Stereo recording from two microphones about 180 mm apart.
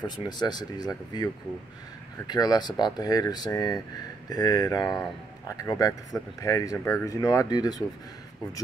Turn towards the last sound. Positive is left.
turn(degrees=20)  # may be behind; listen again after turning